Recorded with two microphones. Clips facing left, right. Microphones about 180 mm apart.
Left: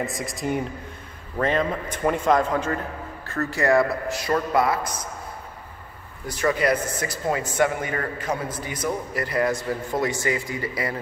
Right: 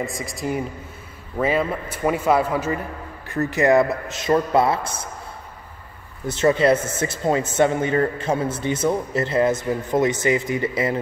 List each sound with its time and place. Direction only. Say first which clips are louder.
0.0 s a man's voice: right 1 dB; centre (ahead or behind)
3.3 s speech: right 4 dB; 20° right (ahead or behind)
6.2 s speech: right 5 dB; 25° right (ahead or behind)